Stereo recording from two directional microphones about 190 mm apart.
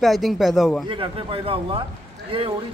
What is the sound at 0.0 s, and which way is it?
Speech, centre (ahead or behind).